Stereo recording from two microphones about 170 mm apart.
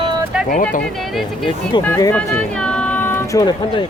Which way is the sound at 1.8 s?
15° left (ahead or behind).